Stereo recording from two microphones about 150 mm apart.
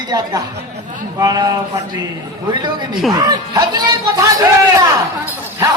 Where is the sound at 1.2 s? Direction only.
25° right (ahead or behind).